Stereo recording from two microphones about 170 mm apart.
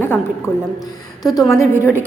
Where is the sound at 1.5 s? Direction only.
15° left (ahead or behind).